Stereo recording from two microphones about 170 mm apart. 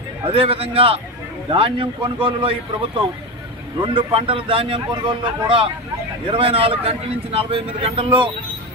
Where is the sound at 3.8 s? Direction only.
30° right (ahead or behind).